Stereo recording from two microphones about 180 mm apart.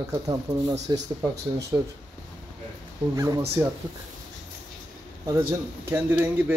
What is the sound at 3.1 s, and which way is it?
Speech, 20° right (ahead or behind).